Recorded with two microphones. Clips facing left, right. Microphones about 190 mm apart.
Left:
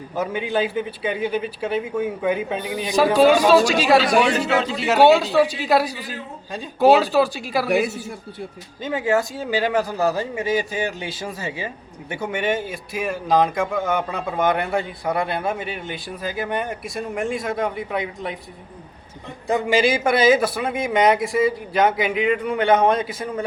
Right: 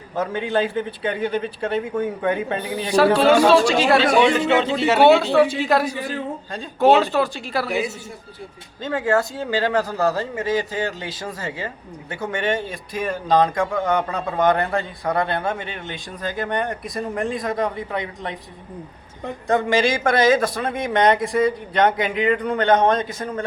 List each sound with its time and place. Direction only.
0.2 s a man's voice: 5° left (ahead or behind)
8.8 s speech: 10° left (ahead or behind)
19.5 s speech: 10° left (ahead or behind)